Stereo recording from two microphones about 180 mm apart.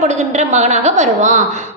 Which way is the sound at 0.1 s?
40° right (ahead or behind).